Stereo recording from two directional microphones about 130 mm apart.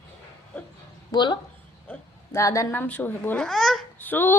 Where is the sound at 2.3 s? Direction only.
25° left (ahead or behind).